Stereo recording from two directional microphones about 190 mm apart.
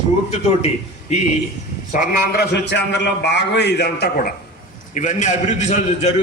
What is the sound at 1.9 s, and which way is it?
A man's voice, 45° left (ahead or behind).